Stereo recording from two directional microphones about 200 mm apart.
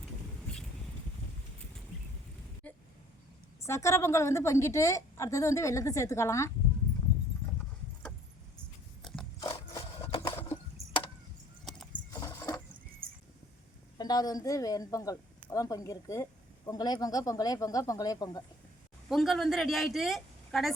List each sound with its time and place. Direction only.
2.6 s a sound: 5° left (ahead or behind)
3.6 s speech: 15° left (ahead or behind)
9.0 s biting: centre (ahead or behind)
9.4 s a sound: 20° left (ahead or behind)
12.1 s keys jangling: 20° left (ahead or behind)
14.0 s speech: 20° left (ahead or behind)
19.0 s a man's voice: centre (ahead or behind)